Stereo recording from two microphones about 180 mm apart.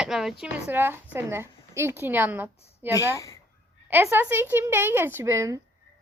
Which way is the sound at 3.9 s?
10° right (ahead or behind).